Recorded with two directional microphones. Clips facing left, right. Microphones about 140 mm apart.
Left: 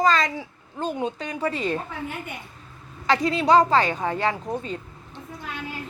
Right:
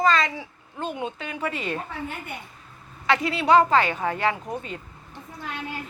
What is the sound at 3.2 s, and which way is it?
Speech, 40° left (ahead or behind).